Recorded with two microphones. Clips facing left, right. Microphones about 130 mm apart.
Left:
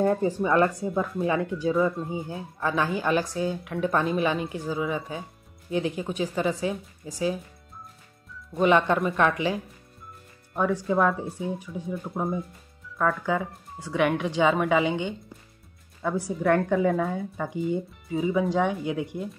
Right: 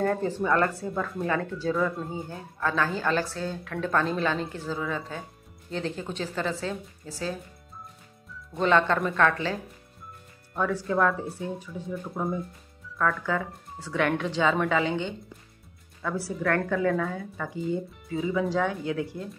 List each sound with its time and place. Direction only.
0.0 s a woman's voice: 15° left (ahead or behind)
2.6 s a woman's voice: 15° left (ahead or behind)
8.5 s a woman's voice: 15° left (ahead or behind)